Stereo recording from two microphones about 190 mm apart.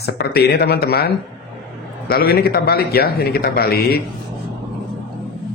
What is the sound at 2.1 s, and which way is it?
A man's voice, 55° left (ahead or behind).